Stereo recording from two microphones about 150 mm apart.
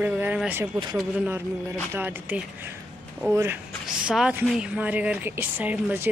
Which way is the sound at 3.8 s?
5° right (ahead or behind).